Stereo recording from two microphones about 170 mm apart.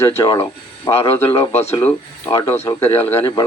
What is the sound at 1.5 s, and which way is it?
Speech, 40° left (ahead or behind).